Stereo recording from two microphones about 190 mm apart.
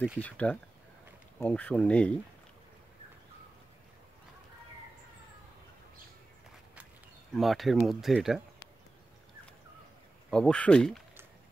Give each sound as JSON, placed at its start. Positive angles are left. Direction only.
{"t": 0.2, "sound": "speech", "side_deg": 5}
{"t": 7.3, "sound": "speech", "side_deg": 0}
{"t": 10.3, "sound": "speech", "side_deg": 5}